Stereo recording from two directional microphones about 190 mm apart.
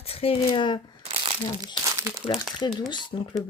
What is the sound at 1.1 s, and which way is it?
Crumpling, 30° right (ahead or behind).